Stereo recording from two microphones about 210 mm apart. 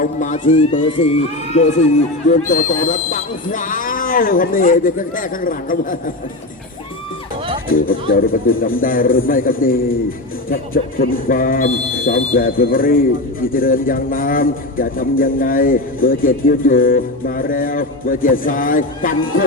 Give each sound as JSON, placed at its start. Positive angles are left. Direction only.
{"t": 0.0, "sound": "speech", "side_deg": 35}
{"t": 7.7, "sound": "speech", "side_deg": 45}